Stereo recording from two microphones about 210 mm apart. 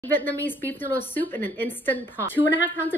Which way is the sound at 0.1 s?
10° left (ahead or behind).